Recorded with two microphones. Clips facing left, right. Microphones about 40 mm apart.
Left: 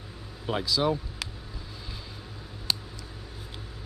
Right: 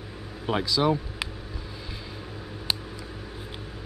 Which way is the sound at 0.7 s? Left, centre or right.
Centre.